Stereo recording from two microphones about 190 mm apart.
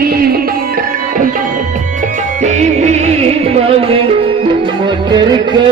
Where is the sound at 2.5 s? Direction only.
35° right (ahead or behind).